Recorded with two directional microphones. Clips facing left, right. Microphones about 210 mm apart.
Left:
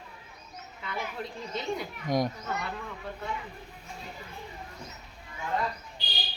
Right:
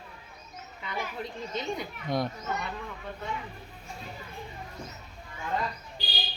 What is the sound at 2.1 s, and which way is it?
Speech, 15° left (ahead or behind).